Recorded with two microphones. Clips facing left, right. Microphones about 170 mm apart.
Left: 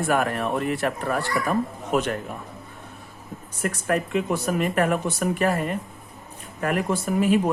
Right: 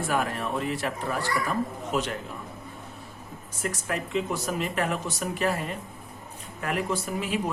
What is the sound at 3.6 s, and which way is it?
Speech, 55° left (ahead or behind).